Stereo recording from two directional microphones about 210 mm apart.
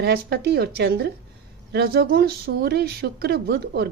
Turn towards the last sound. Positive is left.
turn(degrees=-50)  # may be behind; listen again after turning